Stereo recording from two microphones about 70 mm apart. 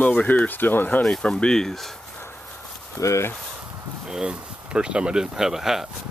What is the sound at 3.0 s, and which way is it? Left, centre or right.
Speech, left.